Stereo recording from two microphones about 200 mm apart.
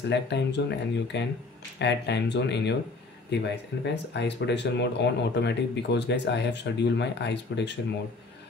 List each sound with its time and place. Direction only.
0.1 s speech: 60° left (ahead or behind)